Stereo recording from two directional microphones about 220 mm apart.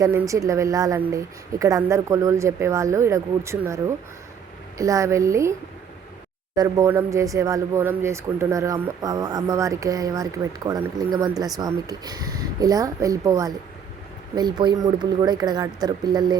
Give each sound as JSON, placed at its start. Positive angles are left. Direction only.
{"t": 0.0, "sound": "speech", "side_deg": -15}
{"t": 6.6, "sound": "speech", "side_deg": -15}